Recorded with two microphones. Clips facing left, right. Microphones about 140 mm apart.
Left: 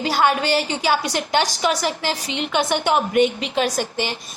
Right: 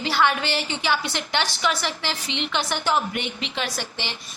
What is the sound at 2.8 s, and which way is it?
Speech, 60° left (ahead or behind).